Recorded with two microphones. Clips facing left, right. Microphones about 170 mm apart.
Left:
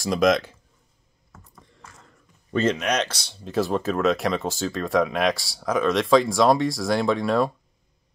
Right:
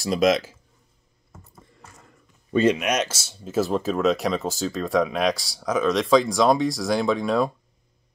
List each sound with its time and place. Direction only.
0.0 s speech: centre (ahead or behind)
1.3 s a sound: 15° right (ahead or behind)
2.5 s speech: 15° right (ahead or behind)